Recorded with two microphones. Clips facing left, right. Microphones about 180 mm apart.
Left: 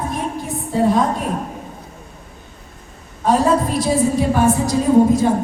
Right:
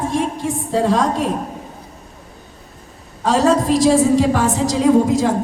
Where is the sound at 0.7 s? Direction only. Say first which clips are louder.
Left 1 dB; 90° right.